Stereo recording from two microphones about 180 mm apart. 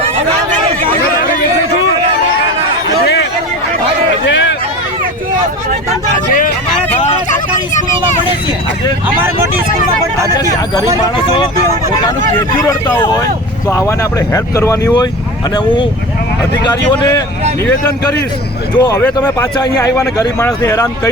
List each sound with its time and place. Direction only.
7.0 s vehicle: 45° left (ahead or behind)
11.0 s speech: 25° left (ahead or behind)
15.5 s speech: 25° left (ahead or behind)
18.8 s speech: 20° left (ahead or behind)